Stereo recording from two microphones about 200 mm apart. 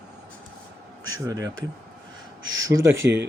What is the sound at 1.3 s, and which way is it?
Speech, 15° right (ahead or behind).